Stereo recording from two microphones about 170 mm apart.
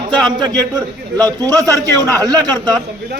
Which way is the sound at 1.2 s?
20° right (ahead or behind).